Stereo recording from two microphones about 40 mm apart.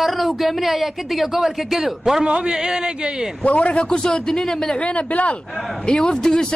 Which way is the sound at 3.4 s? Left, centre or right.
Left.